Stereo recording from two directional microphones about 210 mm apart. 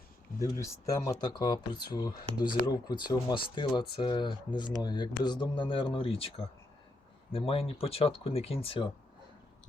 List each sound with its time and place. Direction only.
0.3 s speech: 15° left (ahead or behind)